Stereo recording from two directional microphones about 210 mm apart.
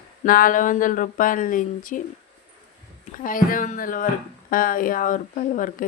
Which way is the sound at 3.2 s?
40° left (ahead or behind).